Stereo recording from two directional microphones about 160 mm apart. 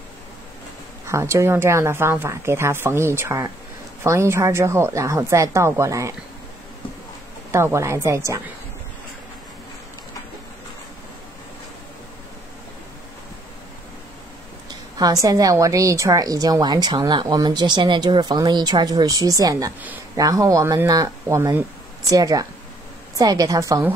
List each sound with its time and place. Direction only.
1.0 s speech: 15° right (ahead or behind)
7.5 s speech: 15° right (ahead or behind)
15.0 s a woman's voice: 25° right (ahead or behind)